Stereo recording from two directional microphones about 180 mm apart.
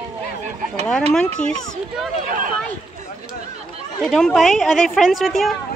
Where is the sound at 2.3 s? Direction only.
50° right (ahead or behind).